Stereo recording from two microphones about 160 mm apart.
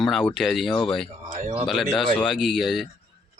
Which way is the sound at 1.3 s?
45° right (ahead or behind).